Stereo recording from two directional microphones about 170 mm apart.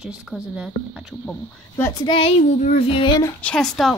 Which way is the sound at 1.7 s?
20° left (ahead or behind).